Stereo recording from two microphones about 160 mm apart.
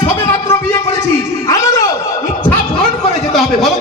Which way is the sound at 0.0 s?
35° left (ahead or behind).